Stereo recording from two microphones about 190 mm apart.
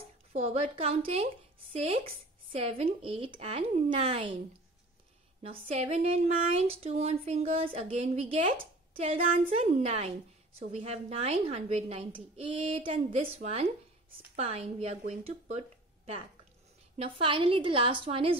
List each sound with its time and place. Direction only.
0.3 s speech: 35° right (ahead or behind)
5.4 s a woman's voice: 30° right (ahead or behind)
16.9 s a woman's voice: 30° right (ahead or behind)